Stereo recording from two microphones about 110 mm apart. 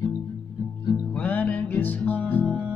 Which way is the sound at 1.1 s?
15° left (ahead or behind).